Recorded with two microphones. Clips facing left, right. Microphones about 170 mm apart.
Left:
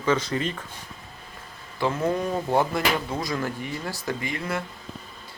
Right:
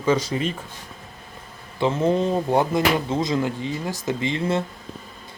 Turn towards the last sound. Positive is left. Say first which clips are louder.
# right 6 dB
turn(degrees=-25)  # may be behind; listen again after turning